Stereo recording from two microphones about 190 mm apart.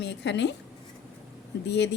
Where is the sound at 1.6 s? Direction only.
65° left (ahead or behind).